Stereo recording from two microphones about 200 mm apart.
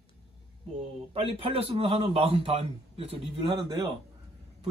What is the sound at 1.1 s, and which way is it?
A man's voice, 30° right (ahead or behind).